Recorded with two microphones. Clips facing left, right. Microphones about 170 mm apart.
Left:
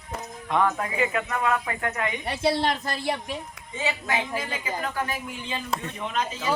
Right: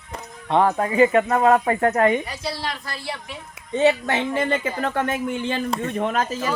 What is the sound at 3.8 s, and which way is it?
Speech, 65° right (ahead or behind).